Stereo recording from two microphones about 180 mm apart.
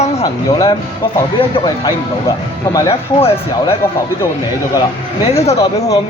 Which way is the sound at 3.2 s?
30° left (ahead or behind).